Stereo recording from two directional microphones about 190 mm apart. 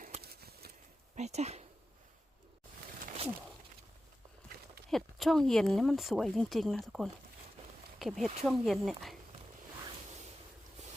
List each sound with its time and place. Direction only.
0.2 s a sound: 55° right (ahead or behind)
1.1 s speech: 35° right (ahead or behind)
4.9 s speech: centre (ahead or behind)